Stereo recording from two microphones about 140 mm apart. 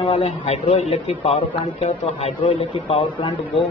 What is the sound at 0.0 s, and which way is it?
Speech, 45° left (ahead or behind).